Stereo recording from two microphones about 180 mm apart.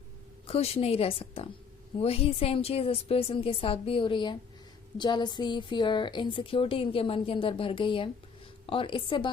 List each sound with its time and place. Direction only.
0.4 s a woman's voice: 35° left (ahead or behind)